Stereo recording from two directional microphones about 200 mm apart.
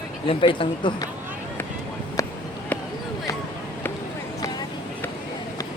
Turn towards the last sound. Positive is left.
turn(degrees=15)  # may be behind; listen again after turning